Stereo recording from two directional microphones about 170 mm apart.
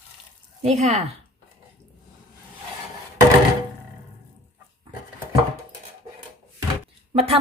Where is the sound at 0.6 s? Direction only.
40° right (ahead or behind).